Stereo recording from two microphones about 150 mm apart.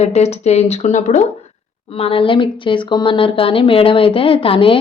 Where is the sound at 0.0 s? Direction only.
45° left (ahead or behind).